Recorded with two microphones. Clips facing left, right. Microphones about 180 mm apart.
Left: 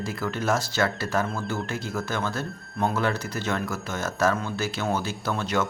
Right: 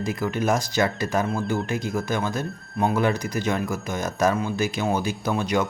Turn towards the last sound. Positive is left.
turn(degrees=-15)  # may be behind; listen again after turning